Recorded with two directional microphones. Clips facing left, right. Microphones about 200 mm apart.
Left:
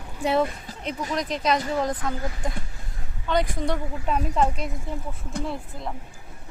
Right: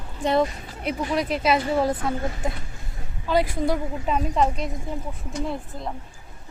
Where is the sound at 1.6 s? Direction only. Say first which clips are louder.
Right 3 dB; 30° right (ahead or behind).